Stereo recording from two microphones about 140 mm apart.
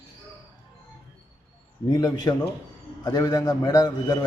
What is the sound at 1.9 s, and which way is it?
A man's voice, 30° left (ahead or behind).